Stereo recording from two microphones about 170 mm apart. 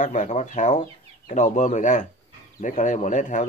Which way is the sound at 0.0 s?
45° left (ahead or behind).